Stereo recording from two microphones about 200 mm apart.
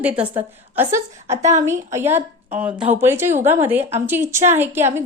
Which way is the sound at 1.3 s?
35° right (ahead or behind).